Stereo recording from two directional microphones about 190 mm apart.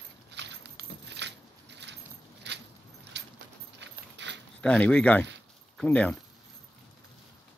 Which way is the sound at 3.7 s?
65° right (ahead or behind).